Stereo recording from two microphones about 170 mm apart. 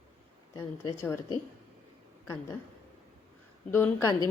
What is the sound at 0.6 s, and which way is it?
Speech, 15° left (ahead or behind).